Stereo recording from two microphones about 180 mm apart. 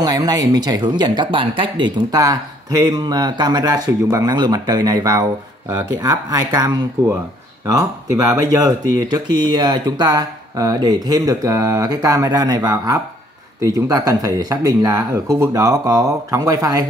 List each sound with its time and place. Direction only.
0.0 s speech: 20° right (ahead or behind)